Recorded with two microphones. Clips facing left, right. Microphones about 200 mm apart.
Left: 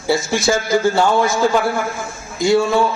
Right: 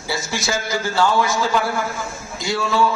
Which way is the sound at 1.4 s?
50° left (ahead or behind).